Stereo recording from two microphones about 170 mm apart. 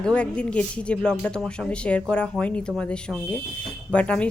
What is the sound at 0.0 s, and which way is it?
Speech, 5° left (ahead or behind).